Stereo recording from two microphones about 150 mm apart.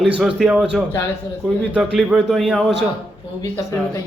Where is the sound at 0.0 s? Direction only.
5° right (ahead or behind).